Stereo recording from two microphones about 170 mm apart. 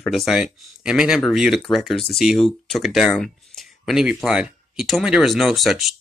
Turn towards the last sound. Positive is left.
turn(degrees=0)  # may be behind; listen again after turning